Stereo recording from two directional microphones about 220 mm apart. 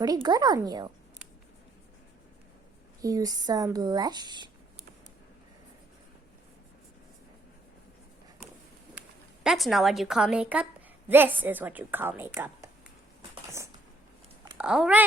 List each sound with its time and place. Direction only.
0.0 s a woman's voice: 20° right (ahead or behind)
3.0 s a woman's voice: 15° right (ahead or behind)
9.0 s a woman's voice: centre (ahead or behind)
14.6 s speech: 5° right (ahead or behind)